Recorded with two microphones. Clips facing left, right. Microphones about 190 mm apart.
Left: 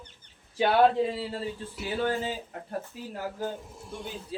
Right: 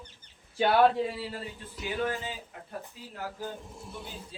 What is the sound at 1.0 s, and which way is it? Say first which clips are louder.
Speech: left 4 dB; 25° left (ahead or behind).